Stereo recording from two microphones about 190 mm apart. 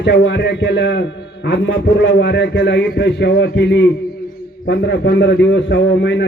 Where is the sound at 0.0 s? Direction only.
65° left (ahead or behind).